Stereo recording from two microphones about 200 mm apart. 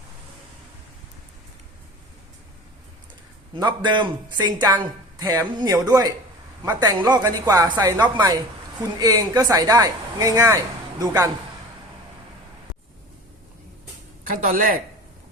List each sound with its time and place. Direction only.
3.5 s speech: 20° right (ahead or behind)
14.3 s speech: 45° right (ahead or behind)